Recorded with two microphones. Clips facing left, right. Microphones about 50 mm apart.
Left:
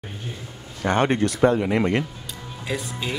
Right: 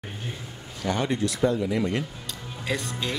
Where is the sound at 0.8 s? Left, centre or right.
Left.